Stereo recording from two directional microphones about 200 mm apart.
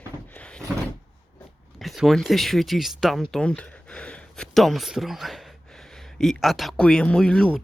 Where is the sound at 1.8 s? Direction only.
Centre (ahead or behind).